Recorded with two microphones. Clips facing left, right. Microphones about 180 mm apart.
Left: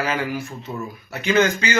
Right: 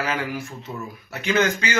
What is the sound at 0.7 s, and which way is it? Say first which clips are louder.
Speech: left 3 dB; 15° left (ahead or behind).